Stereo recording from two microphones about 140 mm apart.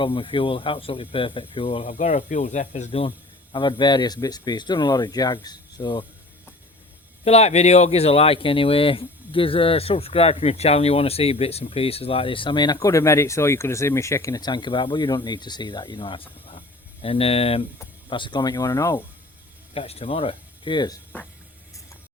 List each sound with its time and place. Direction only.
0.0 s speech: 35° left (ahead or behind); by 3.0 s 55° left (ahead or behind)
3.5 s speech: 35° left (ahead or behind)
7.3 s speech: 50° left (ahead or behind)
16.5 s a sound: 40° left (ahead or behind)
18.1 s speech: 35° left (ahead or behind)
19.7 s speech: 45° left (ahead or behind); by 21.0 s 30° left (ahead or behind)